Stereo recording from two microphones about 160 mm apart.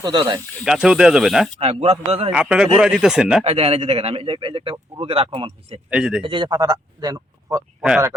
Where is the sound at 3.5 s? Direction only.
40° right (ahead or behind).